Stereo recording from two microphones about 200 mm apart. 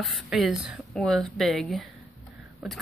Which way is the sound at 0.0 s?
Centre (ahead or behind).